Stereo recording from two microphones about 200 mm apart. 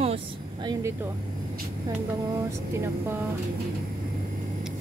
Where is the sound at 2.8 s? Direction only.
10° right (ahead or behind).